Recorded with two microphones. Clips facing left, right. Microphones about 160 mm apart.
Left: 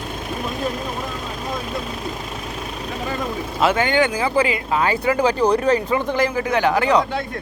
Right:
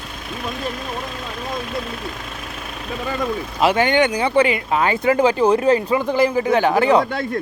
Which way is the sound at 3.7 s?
25° right (ahead or behind).